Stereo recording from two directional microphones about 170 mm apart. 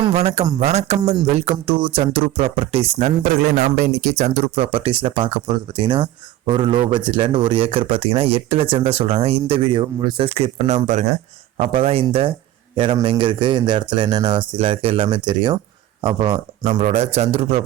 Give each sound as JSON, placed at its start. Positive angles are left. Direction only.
{"t": 0.0, "sound": "a man's voice", "side_deg": -35}
{"t": 3.5, "sound": "a man's voice", "side_deg": -50}